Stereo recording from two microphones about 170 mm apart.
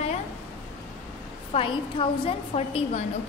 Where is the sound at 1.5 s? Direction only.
30° left (ahead or behind).